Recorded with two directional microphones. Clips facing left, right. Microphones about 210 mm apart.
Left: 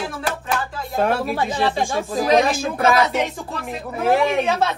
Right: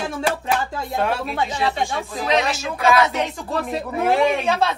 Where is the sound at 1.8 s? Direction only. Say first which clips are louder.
Left 4 dB; 45° left (ahead or behind).